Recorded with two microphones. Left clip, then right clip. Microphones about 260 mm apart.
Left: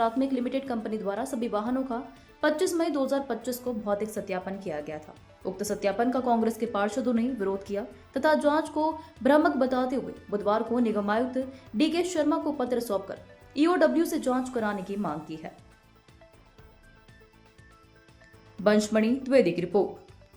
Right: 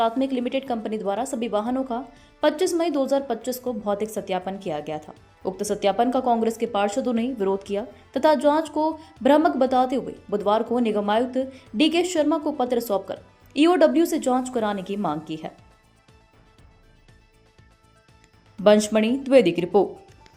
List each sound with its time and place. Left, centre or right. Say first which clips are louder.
0.0 s a woman's voice: right 4 dB; centre
18.6 s a woman's voice: right 6 dB; centre